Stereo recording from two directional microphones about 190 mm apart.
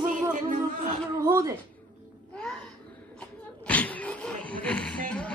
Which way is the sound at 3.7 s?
10° left (ahead or behind).